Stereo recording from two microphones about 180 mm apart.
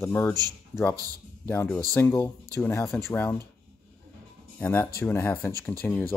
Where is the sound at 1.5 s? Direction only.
10° left (ahead or behind).